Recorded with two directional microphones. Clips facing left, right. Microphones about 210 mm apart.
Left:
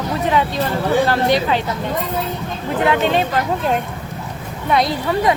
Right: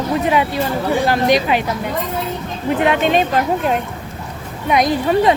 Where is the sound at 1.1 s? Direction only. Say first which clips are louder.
Right 2 dB; 15° right (ahead or behind).